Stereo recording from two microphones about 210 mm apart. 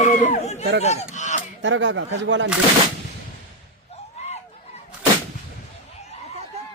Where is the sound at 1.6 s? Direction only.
60° right (ahead or behind).